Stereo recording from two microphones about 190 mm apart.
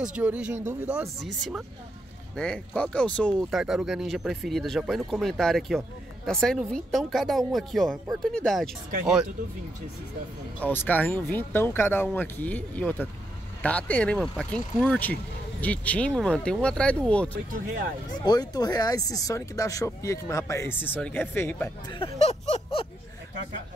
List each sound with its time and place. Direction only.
0.0 s speech: 5° right (ahead or behind)
10.6 s speech: 10° left (ahead or behind)
18.2 s speech: 20° left (ahead or behind)
21.9 s a sound: 30° left (ahead or behind)